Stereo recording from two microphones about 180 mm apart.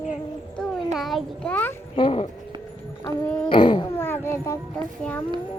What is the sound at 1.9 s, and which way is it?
Speech, 30° left (ahead or behind).